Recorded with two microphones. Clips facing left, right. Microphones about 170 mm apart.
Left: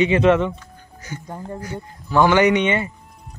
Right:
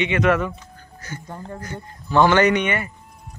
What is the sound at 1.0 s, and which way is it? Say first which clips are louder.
Speech: left 2 dB; 15° left (ahead or behind).